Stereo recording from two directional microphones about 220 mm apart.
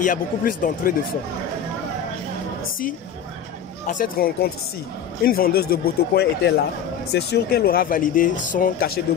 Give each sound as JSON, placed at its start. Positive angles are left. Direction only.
{"t": 0.0, "sound": "speech", "side_deg": 35}
{"t": 3.8, "sound": "speech", "side_deg": 35}